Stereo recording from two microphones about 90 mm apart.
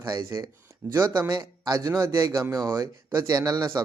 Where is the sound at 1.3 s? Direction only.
50° right (ahead or behind).